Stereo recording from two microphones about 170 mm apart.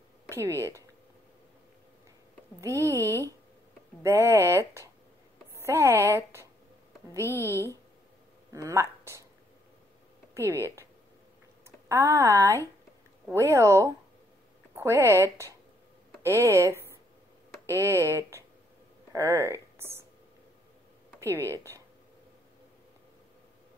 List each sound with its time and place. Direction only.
0.3 s speech: 15° right (ahead or behind)
2.6 s speech: 15° right (ahead or behind)
4.0 s a woman's voice: 15° right (ahead or behind)
7.2 s speech: 15° left (ahead or behind)
8.5 s speech: 15° right (ahead or behind)
10.3 s speech: 15° right (ahead or behind)
11.9 s speech: 15° right (ahead or behind)
21.5 s speech: 15° right (ahead or behind)